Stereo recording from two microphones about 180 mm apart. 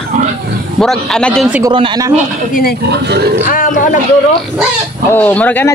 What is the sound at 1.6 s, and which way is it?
Speech, 25° right (ahead or behind).